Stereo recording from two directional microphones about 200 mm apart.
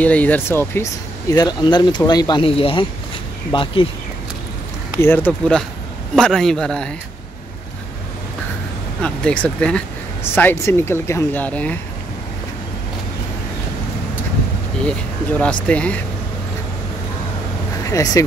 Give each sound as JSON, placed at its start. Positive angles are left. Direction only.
{"t": 0.0, "sound": "speech", "side_deg": 10}
{"t": 5.0, "sound": "speech", "side_deg": 10}
{"t": 9.0, "sound": "speech", "side_deg": 5}
{"t": 14.9, "sound": "speech", "side_deg": 5}
{"t": 17.8, "sound": "speech", "side_deg": 15}